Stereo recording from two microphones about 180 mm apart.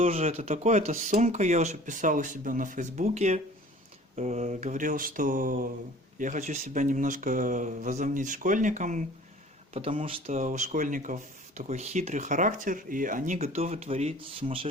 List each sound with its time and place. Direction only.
0.1 s speech: 35° right (ahead or behind)
9.7 s speech: 35° right (ahead or behind)